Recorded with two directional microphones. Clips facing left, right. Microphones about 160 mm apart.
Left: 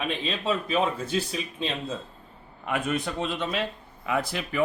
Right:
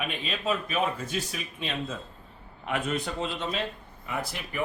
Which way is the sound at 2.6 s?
50° left (ahead or behind).